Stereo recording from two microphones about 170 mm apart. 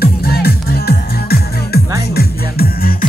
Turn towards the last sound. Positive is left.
turn(degrees=60)  # may be behind; listen again after turning